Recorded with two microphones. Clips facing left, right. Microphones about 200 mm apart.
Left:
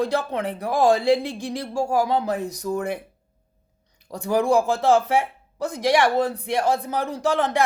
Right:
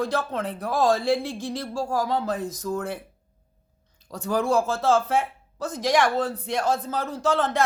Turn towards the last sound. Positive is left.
turn(degrees=15)  # may be behind; listen again after turning